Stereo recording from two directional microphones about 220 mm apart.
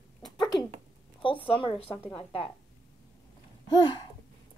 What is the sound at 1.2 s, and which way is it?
Speech, 25° left (ahead or behind).